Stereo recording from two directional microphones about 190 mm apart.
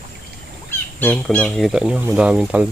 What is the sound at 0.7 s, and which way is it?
Speech, 10° left (ahead or behind).